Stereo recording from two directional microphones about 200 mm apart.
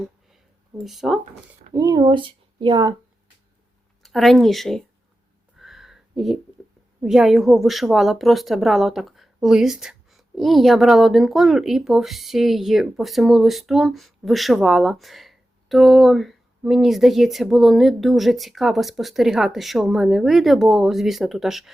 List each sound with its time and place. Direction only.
0.9 s speech: centre (ahead or behind)
1.7 s speech: 15° right (ahead or behind)
4.0 s speech: centre (ahead or behind)
5.5 s a sound: centre (ahead or behind)
7.0 s speech: centre (ahead or behind)